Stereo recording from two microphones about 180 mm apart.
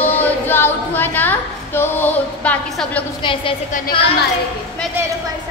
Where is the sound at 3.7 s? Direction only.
45° left (ahead or behind).